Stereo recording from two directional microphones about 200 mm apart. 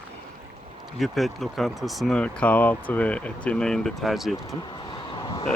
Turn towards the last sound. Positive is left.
turn(degrees=25)  # may be behind; listen again after turning